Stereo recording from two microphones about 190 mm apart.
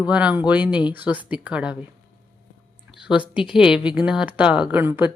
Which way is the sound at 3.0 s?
5° right (ahead or behind).